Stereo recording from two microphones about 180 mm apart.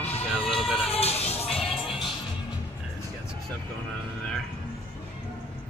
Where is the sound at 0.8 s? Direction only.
35° left (ahead or behind).